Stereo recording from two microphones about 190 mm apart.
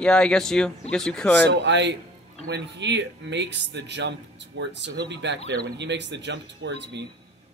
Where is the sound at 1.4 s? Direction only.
65° right (ahead or behind).